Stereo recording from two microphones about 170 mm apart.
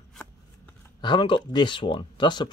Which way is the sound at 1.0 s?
30° left (ahead or behind).